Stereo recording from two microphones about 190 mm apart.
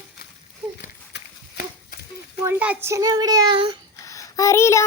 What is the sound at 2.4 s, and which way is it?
Speech, 10° right (ahead or behind).